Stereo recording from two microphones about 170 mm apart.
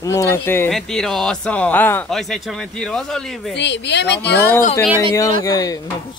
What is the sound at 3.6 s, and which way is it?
Speech, 90° left.